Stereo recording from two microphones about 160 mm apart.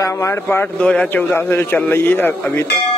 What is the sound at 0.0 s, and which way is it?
A man's voice, 20° left (ahead or behind).